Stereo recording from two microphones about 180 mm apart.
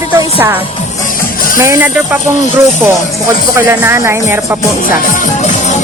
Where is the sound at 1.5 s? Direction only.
15° right (ahead or behind).